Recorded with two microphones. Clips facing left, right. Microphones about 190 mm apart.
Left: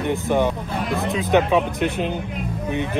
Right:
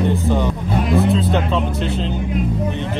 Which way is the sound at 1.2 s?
15° left (ahead or behind).